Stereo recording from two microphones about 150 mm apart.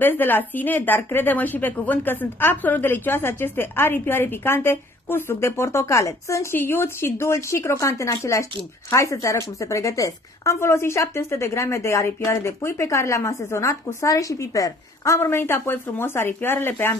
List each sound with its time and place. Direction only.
0.0 s a woman's voice: 15° left (ahead or behind)